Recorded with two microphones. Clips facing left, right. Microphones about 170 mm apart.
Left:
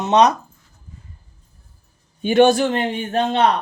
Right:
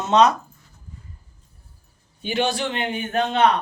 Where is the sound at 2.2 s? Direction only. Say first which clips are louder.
Left 10 dB; 50° left (ahead or behind); by 3.4 s 35° left (ahead or behind).